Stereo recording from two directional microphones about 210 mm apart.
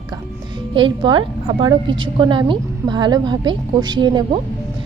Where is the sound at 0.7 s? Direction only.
25° right (ahead or behind).